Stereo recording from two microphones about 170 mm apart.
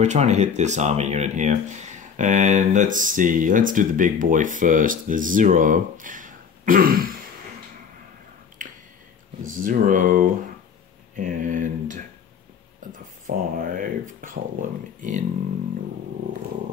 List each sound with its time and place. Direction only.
0.0 s speech: 40° right (ahead or behind); by 7.2 s 55° right (ahead or behind)
8.6 s a sound: 50° right (ahead or behind)
9.5 s speech: 50° right (ahead or behind)